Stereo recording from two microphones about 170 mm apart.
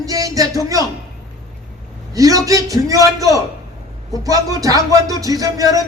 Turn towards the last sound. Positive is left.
turn(degrees=-20)  # may be behind; listen again after turning